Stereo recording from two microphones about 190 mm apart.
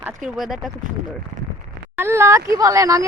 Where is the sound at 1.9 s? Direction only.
15° right (ahead or behind).